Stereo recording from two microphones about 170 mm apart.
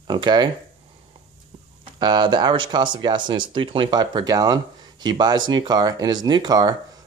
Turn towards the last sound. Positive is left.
turn(degrees=-25)  # may be behind; listen again after turning